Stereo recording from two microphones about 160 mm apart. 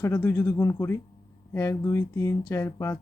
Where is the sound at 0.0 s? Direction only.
15° left (ahead or behind).